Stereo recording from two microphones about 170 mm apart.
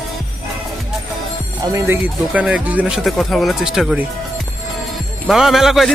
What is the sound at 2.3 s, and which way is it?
A man's voice, 5° right (ahead or behind).